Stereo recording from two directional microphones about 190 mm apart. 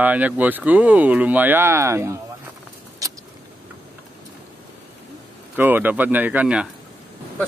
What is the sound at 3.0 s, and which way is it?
Vehicle, 20° right (ahead or behind).